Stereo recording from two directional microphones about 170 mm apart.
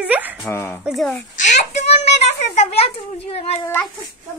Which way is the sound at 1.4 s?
45° left (ahead or behind).